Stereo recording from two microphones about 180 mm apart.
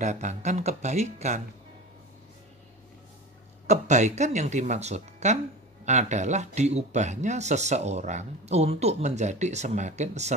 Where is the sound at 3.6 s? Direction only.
40° right (ahead or behind).